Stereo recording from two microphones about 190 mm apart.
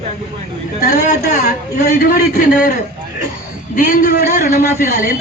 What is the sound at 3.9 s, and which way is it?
A man's voice, 40° left (ahead or behind).